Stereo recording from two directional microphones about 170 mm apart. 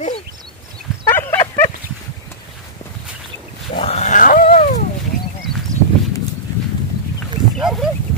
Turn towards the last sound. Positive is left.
turn(degrees=0)  # may be behind; listen again after turning